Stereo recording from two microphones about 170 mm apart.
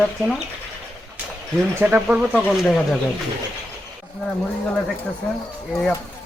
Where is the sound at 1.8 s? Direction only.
10° right (ahead or behind).